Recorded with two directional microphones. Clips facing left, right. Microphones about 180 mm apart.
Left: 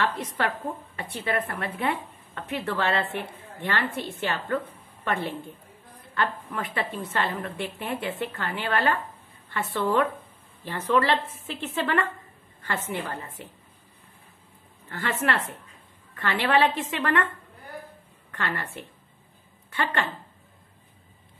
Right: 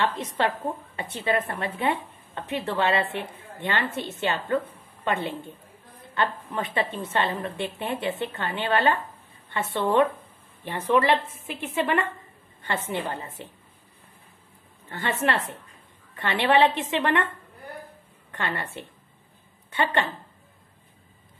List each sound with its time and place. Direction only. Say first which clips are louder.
0.0 s a woman's voice: right 2 dB; 25° right (ahead or behind)
14.9 s a woman's voice: right 1 dB; 20° right (ahead or behind)
18.3 s a woman's voice: right 1 dB; 20° right (ahead or behind)